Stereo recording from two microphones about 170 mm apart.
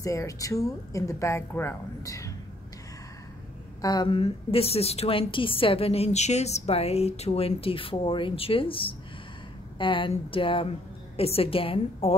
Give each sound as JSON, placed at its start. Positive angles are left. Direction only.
{"t": 0.0, "sound": "a woman's voice", "side_deg": 20}
{"t": 3.8, "sound": "a woman's voice", "side_deg": 25}